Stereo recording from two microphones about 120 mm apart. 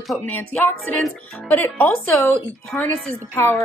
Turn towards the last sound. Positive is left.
turn(degrees=15)  # may be behind; listen again after turning